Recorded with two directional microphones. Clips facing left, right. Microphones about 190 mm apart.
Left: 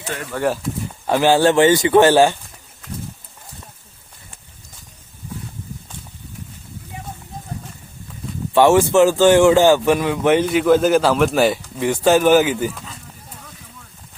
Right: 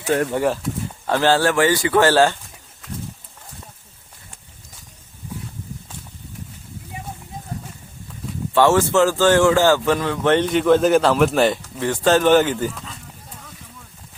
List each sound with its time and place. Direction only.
0.1 s speech: 50° right (ahead or behind)
0.4 s speech: centre (ahead or behind)
1.0 s speech: 15° left (ahead or behind)
8.5 s speech: 15° left (ahead or behind)